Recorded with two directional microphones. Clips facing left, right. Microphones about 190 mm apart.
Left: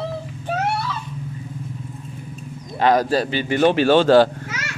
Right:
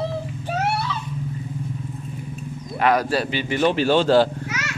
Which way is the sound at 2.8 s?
40° left (ahead or behind).